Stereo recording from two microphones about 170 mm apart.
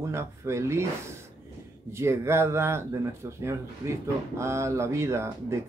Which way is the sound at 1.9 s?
15° right (ahead or behind).